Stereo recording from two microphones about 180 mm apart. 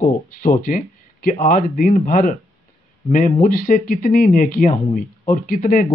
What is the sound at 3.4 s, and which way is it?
Speech, 50° left (ahead or behind).